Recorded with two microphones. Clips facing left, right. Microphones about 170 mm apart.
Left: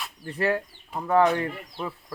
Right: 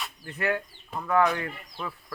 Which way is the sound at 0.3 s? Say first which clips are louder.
Left 4 dB; 30° left (ahead or behind).